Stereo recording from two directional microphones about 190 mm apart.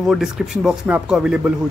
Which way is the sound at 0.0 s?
5° right (ahead or behind).